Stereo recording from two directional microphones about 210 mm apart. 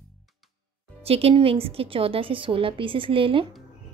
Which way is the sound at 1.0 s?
30° right (ahead or behind).